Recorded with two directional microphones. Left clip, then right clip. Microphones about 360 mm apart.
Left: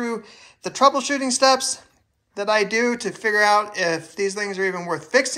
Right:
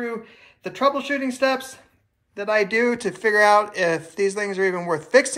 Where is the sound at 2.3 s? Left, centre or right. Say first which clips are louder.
Left 1 dB; centre.